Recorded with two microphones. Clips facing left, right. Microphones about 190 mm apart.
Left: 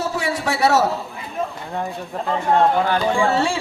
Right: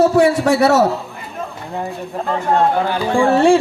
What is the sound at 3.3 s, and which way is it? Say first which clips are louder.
Speech: right 8 dB; 55° right (ahead or behind).